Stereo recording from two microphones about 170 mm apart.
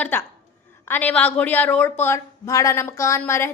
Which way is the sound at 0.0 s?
15° left (ahead or behind).